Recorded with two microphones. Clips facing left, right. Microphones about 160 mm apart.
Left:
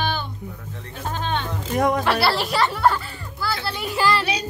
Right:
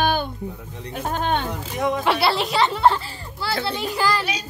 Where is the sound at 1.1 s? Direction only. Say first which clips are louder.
Right 3 dB; 55° right (ahead or behind).